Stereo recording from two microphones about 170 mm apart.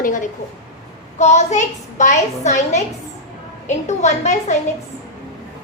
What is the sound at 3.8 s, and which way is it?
Speech, 45° left (ahead or behind).